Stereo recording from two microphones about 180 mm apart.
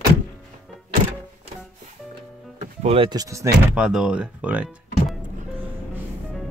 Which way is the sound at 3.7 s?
5° right (ahead or behind).